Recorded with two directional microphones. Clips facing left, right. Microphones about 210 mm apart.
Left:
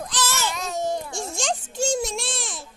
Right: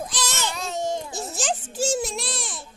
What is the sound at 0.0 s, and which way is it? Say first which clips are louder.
Baby cry: left 2 dB; 15° right (ahead or behind).